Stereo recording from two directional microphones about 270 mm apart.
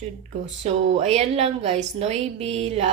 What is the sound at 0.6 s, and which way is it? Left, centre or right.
A woman's voice, right.